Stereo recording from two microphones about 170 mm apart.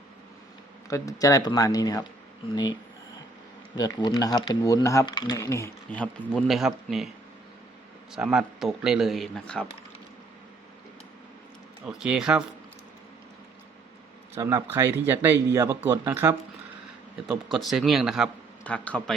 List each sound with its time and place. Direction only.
0.9 s speech: 20° left (ahead or behind)
3.8 s speech: 25° left (ahead or behind); by 7.1 s centre (ahead or behind)
8.1 s a man's voice: 5° right (ahead or behind)
11.9 s a man's voice: 5° right (ahead or behind)
14.3 s speech: 15° right (ahead or behind)
17.2 s a man's voice: centre (ahead or behind)